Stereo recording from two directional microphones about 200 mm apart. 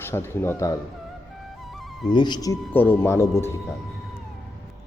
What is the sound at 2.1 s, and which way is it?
Speech, 20° left (ahead or behind).